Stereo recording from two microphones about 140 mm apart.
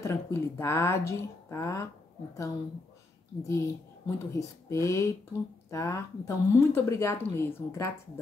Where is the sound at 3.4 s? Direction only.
20° left (ahead or behind).